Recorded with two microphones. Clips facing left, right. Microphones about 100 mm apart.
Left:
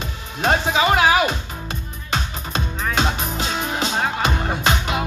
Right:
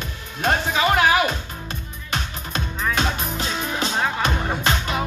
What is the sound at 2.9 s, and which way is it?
Music, 20° left (ahead or behind).